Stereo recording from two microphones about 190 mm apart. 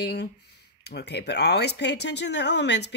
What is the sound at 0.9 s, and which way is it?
Speech, 60° left (ahead or behind).